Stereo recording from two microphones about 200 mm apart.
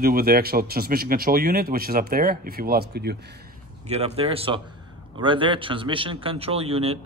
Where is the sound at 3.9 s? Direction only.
30° right (ahead or behind).